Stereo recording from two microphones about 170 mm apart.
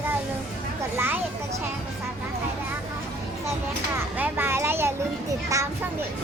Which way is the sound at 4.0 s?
10° right (ahead or behind).